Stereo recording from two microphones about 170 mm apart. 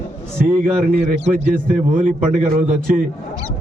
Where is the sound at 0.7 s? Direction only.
50° right (ahead or behind).